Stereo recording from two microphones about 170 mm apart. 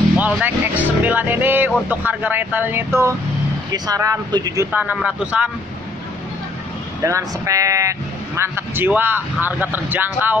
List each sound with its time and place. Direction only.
0.3 s speech: 10° right (ahead or behind)
4.7 s speech: 10° right (ahead or behind)
7.0 s speech: 20° right (ahead or behind)